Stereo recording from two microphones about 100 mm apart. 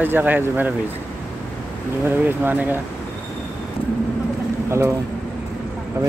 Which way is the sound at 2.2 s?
20° right (ahead or behind).